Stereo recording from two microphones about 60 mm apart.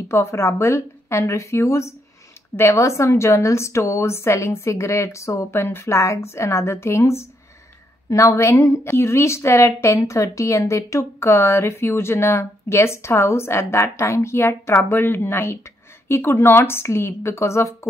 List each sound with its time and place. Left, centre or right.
0.1 s speech: left
8.1 s a woman's voice: left
8.5 s speech: left